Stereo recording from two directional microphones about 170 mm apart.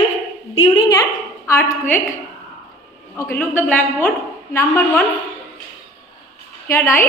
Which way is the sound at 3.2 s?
15° left (ahead or behind).